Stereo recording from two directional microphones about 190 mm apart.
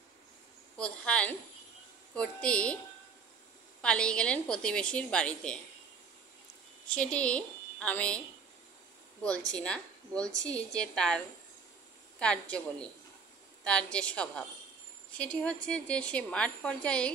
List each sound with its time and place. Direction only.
0.7 s a woman's voice: 5° left (ahead or behind)
3.8 s a woman's voice: 5° left (ahead or behind)
6.9 s a woman's voice: 5° left (ahead or behind)
9.5 s a woman's voice: 5° left (ahead or behind)
13.7 s a woman's voice: 5° left (ahead or behind)